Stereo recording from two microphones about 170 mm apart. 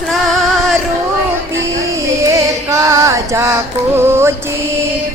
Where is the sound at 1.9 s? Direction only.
15° right (ahead or behind).